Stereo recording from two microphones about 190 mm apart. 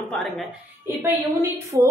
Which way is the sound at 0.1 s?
Centre (ahead or behind).